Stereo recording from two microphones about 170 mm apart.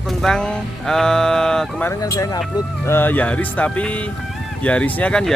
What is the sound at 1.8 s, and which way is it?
Speech, 20° left (ahead or behind).